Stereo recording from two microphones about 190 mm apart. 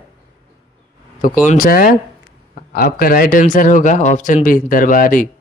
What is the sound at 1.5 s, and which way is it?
Speech, 50° left (ahead or behind).